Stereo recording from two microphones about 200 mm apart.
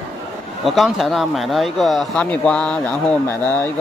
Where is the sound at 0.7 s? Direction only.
Centre (ahead or behind).